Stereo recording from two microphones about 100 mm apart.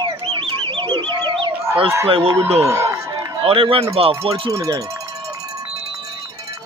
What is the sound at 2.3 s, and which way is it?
Speech, 25° right (ahead or behind).